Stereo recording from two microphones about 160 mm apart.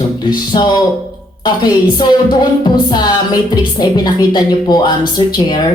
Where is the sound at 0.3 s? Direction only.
25° left (ahead or behind).